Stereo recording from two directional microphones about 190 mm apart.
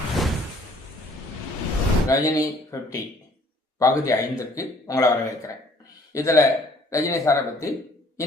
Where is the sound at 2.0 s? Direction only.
20° left (ahead or behind).